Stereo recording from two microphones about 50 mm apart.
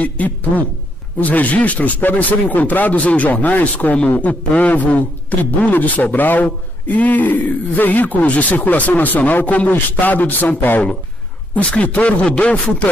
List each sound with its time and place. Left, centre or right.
0.0 s a man's voice: left